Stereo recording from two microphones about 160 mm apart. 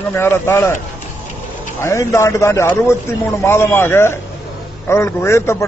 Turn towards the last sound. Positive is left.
turn(degrees=15)  # may be behind; listen again after turning